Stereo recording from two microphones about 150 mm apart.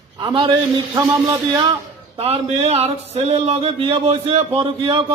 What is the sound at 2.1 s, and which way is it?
A man's voice, 40° right (ahead or behind).